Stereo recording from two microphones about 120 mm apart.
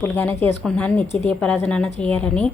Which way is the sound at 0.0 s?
20° left (ahead or behind).